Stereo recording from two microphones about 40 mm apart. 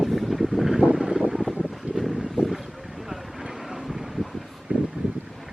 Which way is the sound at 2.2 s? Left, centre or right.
Centre.